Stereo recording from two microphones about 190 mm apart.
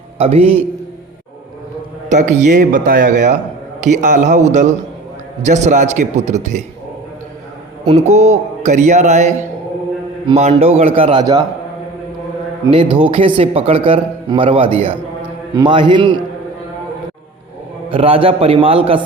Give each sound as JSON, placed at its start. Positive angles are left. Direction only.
{"t": 0.2, "sound": "speech", "side_deg": -30}
{"t": 2.0, "sound": "speech", "side_deg": -40}
{"t": 5.4, "sound": "speech", "side_deg": -40}
{"t": 7.9, "sound": "a man's voice", "side_deg": -35}
{"t": 12.7, "sound": "a man's voice", "side_deg": -25}
{"t": 17.9, "sound": "a man's voice", "side_deg": -30}